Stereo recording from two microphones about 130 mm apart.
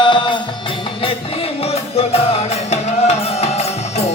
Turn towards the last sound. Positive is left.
turn(degrees=55)  # may be behind; listen again after turning